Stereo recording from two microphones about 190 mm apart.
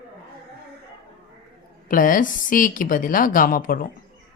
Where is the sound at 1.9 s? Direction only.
45° left (ahead or behind).